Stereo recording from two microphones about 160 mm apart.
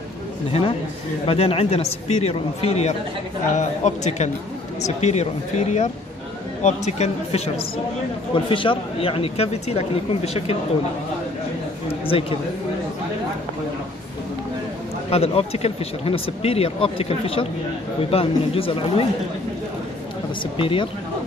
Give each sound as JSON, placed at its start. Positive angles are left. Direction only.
{"t": 0.5, "sound": "speech", "side_deg": 35}
{"t": 12.1, "sound": "speech", "side_deg": 35}
{"t": 15.0, "sound": "speech", "side_deg": 40}
{"t": 20.5, "sound": "speech", "side_deg": 35}